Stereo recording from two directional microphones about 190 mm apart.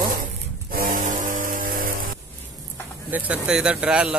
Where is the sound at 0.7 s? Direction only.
50° right (ahead or behind).